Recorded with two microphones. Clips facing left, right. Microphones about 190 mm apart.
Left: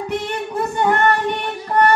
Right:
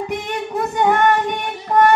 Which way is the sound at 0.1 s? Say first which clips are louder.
Even; 15° right (ahead or behind).